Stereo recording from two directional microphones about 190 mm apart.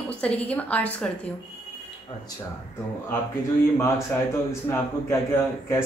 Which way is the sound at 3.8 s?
15° left (ahead or behind).